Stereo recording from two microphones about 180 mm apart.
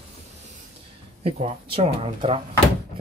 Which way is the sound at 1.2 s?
30° right (ahead or behind).